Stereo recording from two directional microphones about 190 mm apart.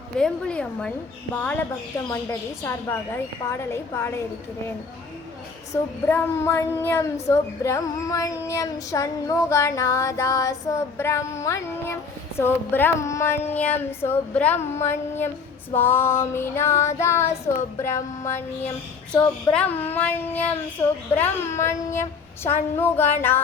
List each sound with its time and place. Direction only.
0.2 s speech: 5° left (ahead or behind)
3.6 s speech: 15° left (ahead or behind)
5.7 s speech: 15° left (ahead or behind)